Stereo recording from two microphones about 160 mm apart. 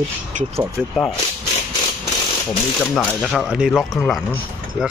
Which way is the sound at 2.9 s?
Centre (ahead or behind).